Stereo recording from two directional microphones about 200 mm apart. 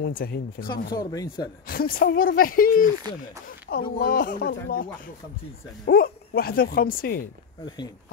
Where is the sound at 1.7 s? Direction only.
45° left (ahead or behind).